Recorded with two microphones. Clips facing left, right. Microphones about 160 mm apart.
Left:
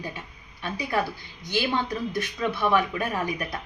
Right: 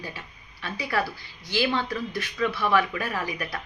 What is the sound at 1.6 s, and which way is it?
A woman's voice, 20° left (ahead or behind).